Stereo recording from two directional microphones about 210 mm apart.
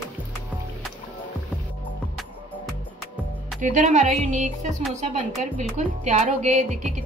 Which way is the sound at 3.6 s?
35° right (ahead or behind).